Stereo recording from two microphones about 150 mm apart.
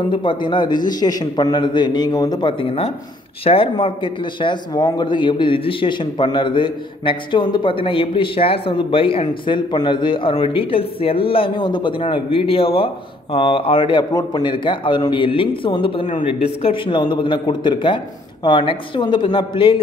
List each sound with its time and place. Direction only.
0.1 s speech: 35° left (ahead or behind)